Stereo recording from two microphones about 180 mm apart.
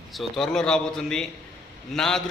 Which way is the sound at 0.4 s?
5° left (ahead or behind).